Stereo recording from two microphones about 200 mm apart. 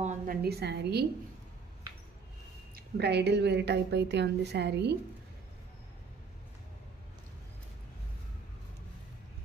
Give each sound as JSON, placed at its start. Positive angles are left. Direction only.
{"t": 0.0, "sound": "a sound", "side_deg": -35}
{"t": 0.4, "sound": "a woman's voice", "side_deg": -55}
{"t": 2.7, "sound": "a woman's voice", "side_deg": -55}